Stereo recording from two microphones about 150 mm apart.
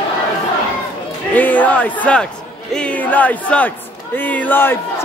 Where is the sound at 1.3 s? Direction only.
10° left (ahead or behind).